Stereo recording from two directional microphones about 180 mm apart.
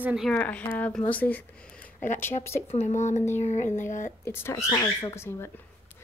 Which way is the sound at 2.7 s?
40° left (ahead or behind).